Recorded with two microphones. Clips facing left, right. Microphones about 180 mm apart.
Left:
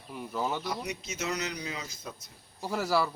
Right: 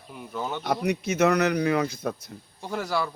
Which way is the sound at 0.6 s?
60° right (ahead or behind).